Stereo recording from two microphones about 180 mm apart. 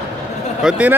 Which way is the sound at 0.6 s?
5° right (ahead or behind).